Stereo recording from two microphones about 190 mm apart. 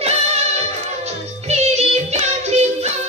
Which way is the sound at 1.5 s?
35° right (ahead or behind).